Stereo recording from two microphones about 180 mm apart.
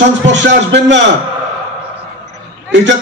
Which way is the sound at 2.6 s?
80° right.